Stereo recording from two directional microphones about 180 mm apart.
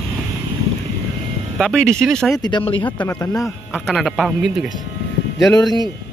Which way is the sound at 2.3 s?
25° left (ahead or behind).